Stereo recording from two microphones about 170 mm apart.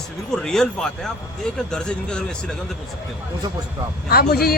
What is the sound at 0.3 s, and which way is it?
Speech, 5° left (ahead or behind).